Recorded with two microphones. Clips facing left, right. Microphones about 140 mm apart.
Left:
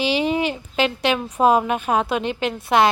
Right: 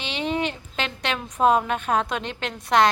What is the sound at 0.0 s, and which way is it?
Speech, 5° left (ahead or behind).